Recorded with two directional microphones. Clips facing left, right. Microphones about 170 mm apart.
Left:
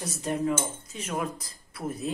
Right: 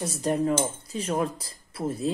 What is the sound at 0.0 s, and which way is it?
Speech, 35° right (ahead or behind).